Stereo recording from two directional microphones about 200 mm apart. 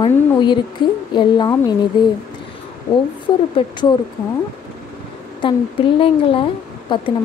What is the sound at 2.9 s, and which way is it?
Speech, 15° left (ahead or behind).